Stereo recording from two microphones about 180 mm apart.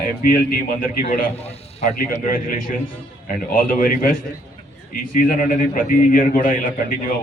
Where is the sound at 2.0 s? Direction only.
50° left (ahead or behind).